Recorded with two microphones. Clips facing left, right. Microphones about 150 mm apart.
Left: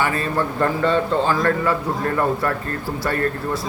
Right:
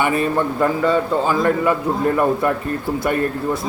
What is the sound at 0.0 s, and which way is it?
A man's voice, 20° right (ahead or behind).